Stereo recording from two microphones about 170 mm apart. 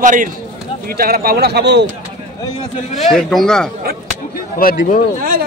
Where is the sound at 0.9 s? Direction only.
60° right (ahead or behind); by 1.8 s 85° right.